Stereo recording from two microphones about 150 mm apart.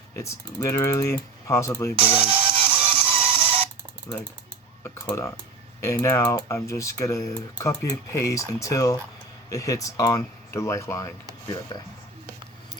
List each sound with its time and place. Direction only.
0.2 s speech: 20° left (ahead or behind)
2.0 s music: 40° right (ahead or behind)
4.8 s speech: 15° left (ahead or behind)